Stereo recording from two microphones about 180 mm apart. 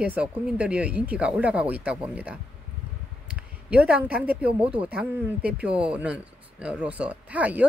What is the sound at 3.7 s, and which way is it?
Speech, 5° right (ahead or behind).